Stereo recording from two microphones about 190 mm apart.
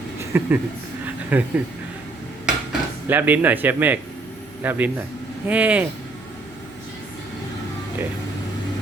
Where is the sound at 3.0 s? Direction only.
10° right (ahead or behind).